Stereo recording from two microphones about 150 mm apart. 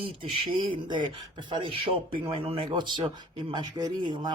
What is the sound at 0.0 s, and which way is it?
Speech, 35° right (ahead or behind).